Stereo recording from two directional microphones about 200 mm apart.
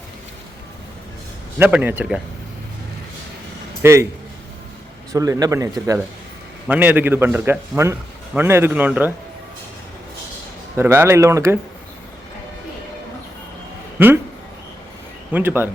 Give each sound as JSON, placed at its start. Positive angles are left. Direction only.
{"t": 1.5, "sound": "a man's voice", "side_deg": -10}
{"t": 3.8, "sound": "a man's voice", "side_deg": -15}
{"t": 5.1, "sound": "a man's voice", "side_deg": -15}
{"t": 10.8, "sound": "a man's voice", "side_deg": -10}
{"t": 14.0, "sound": "a man's voice", "side_deg": -10}
{"t": 15.3, "sound": "a man's voice", "side_deg": -10}